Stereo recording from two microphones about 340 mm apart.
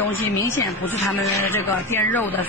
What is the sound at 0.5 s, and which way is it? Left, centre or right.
Speech, centre.